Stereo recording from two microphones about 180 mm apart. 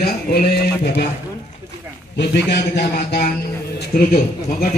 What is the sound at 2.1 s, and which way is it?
A man's voice, 70° left (ahead or behind).